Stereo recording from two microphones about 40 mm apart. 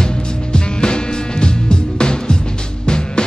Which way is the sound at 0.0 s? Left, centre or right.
Centre.